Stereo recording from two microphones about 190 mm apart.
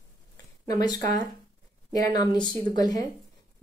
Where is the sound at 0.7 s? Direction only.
20° left (ahead or behind).